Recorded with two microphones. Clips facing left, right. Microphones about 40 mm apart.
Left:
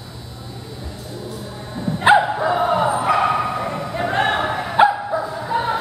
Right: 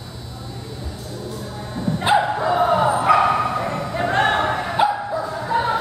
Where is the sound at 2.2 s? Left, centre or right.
Centre.